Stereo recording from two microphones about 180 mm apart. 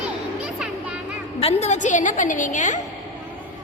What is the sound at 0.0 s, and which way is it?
Music, 5° right (ahead or behind).